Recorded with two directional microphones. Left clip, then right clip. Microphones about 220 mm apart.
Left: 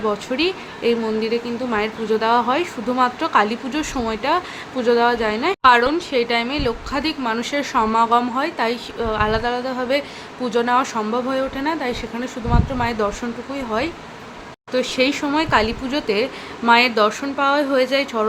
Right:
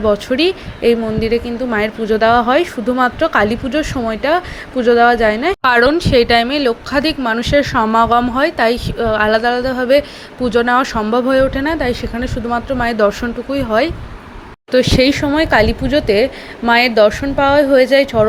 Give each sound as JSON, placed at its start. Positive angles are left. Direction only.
{"t": 0.0, "sound": "a woman's voice", "side_deg": -20}